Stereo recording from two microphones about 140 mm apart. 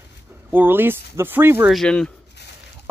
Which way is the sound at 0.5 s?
15° right (ahead or behind).